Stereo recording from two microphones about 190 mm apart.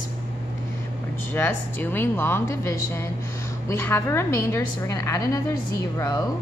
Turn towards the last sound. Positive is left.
turn(degrees=20)  # may be behind; listen again after turning